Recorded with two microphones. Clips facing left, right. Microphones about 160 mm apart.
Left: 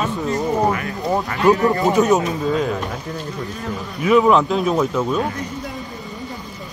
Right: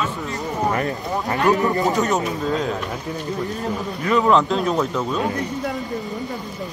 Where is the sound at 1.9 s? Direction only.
15° left (ahead or behind).